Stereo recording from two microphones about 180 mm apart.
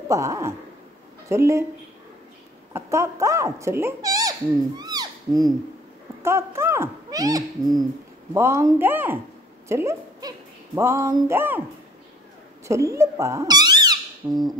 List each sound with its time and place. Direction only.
0.1 s speech: 15° right (ahead or behind)
2.7 s speech: 15° right (ahead or behind)
12.6 s speech: 15° right (ahead or behind)